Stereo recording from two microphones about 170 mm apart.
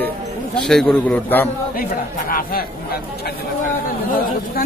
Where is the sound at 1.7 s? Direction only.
55° left (ahead or behind).